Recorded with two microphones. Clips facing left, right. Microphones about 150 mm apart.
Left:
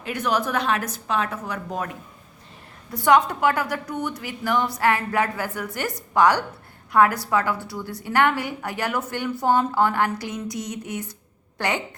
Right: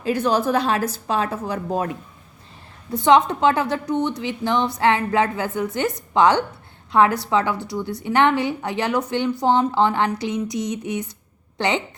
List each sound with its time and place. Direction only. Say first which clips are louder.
0.0 s a woman's voice: right 5 dB; 30° right (ahead or behind)
2.9 s a woman's voice: right 3 dB; 25° right (ahead or behind)